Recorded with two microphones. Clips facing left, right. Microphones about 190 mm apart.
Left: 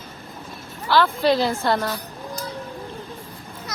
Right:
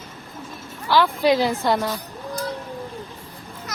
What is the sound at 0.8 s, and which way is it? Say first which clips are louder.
A woman's voice: right 1 dB; 15° right (ahead or behind).